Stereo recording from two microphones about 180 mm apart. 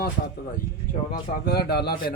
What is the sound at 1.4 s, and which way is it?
Speech, 60° left (ahead or behind).